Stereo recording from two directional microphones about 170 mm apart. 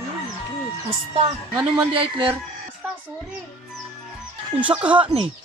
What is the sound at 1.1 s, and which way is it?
Speech, 30° right (ahead or behind).